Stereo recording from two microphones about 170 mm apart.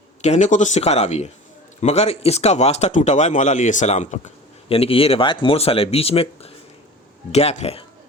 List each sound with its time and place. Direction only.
0.2 s speech: 45° left (ahead or behind)